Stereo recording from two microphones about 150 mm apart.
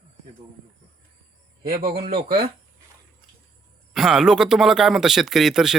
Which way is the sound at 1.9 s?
90° right.